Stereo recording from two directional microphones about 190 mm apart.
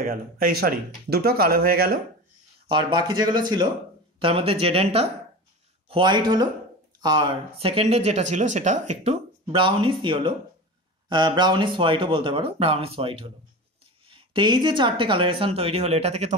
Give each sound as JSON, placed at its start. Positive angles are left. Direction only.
{"t": 0.0, "sound": "speech", "side_deg": -50}
{"t": 2.7, "sound": "speech", "side_deg": -25}